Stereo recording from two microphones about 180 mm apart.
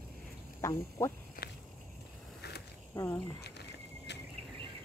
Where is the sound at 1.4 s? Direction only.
55° left (ahead or behind).